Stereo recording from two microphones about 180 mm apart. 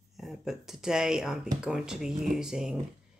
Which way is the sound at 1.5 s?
5° right (ahead or behind).